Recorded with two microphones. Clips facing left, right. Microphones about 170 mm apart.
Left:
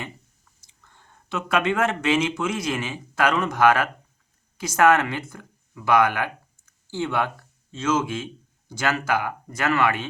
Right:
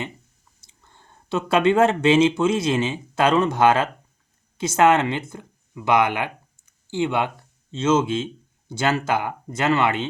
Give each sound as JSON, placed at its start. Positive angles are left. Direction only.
{"t": 0.7, "sound": "speech", "side_deg": -30}